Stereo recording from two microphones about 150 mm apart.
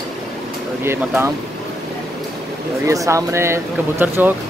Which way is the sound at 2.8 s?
20° right (ahead or behind).